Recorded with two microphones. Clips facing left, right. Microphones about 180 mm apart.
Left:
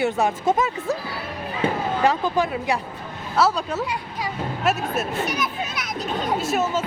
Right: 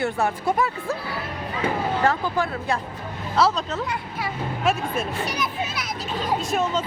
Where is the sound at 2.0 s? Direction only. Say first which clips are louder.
Left 5 dB; 20° left (ahead or behind).